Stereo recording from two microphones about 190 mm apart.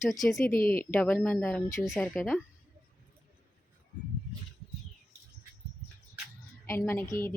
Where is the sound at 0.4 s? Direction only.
50° left (ahead or behind).